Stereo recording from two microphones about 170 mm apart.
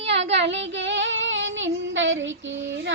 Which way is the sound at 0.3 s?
90° right.